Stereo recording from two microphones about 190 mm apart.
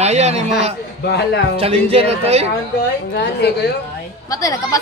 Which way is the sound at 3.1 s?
60° left (ahead or behind).